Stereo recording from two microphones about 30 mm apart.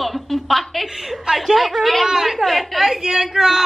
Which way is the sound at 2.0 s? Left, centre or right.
Centre.